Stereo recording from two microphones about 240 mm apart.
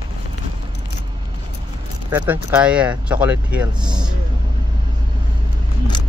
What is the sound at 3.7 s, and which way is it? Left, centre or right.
Speech, centre.